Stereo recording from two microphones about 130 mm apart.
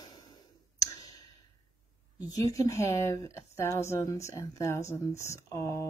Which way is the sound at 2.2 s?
30° left (ahead or behind).